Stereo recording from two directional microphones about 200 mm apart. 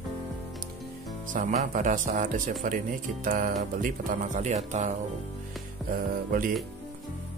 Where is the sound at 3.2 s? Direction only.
40° right (ahead or behind).